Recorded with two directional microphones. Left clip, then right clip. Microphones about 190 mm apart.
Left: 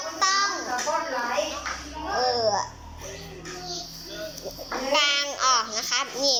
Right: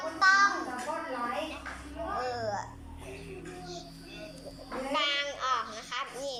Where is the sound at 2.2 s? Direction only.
30° left (ahead or behind).